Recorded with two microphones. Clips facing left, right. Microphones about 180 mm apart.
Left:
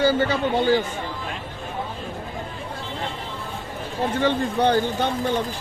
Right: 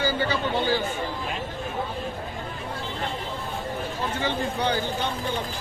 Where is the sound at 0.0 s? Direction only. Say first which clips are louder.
Left 5 dB; 55° left (ahead or behind).